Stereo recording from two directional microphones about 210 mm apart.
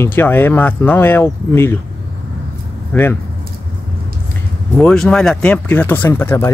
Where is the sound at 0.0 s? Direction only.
10° left (ahead or behind).